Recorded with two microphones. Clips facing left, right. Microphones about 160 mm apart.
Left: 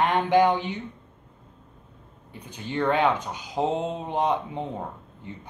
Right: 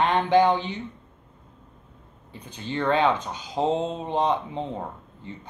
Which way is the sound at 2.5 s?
15° left (ahead or behind).